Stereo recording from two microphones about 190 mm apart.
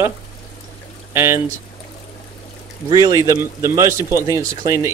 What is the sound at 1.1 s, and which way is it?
Speech, 15° right (ahead or behind).